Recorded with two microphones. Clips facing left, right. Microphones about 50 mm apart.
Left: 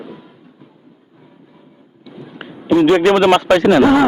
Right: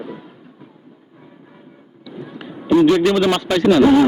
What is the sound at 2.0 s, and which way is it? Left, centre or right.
A man's voice, left.